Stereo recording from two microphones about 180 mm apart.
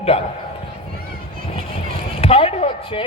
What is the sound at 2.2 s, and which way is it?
Speech, 35° left (ahead or behind).